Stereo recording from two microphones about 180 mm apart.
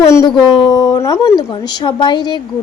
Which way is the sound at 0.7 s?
20° left (ahead or behind).